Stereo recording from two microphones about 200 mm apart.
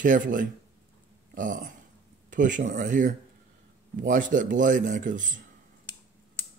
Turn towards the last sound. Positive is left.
turn(degrees=-40)  # may be behind; listen again after turning